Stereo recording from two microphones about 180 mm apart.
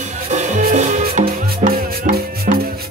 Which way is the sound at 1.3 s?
55° right (ahead or behind).